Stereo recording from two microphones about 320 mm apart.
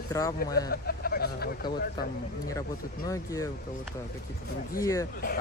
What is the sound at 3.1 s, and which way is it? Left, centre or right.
Speech, centre.